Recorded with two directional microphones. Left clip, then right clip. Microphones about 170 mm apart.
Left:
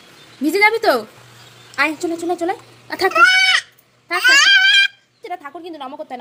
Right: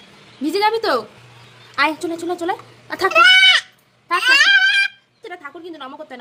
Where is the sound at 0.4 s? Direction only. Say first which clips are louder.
Left 4 dB; 10° left (ahead or behind).